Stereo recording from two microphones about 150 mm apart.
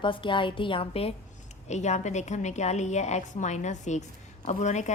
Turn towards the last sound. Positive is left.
turn(degrees=50)  # may be behind; listen again after turning